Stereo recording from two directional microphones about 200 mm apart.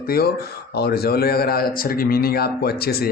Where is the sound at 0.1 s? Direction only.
50° left (ahead or behind).